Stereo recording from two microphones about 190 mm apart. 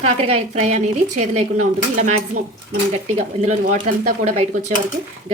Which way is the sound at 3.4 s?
40° right (ahead or behind).